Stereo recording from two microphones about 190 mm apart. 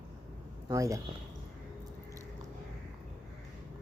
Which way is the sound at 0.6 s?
15° right (ahead or behind).